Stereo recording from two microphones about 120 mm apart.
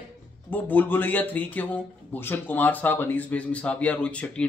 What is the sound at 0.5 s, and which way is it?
A man's voice, 15° left (ahead or behind).